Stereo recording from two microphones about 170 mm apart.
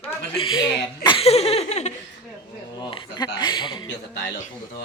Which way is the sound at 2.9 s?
25° left (ahead or behind).